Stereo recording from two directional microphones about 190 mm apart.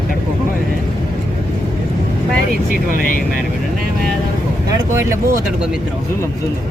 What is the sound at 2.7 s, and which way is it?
Speech, 45° left (ahead or behind).